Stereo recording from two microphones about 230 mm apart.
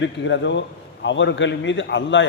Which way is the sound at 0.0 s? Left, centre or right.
Left.